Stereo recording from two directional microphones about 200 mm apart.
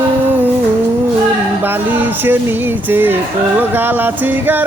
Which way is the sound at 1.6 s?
10° right (ahead or behind).